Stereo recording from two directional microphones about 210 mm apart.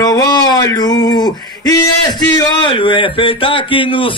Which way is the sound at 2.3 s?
25° left (ahead or behind).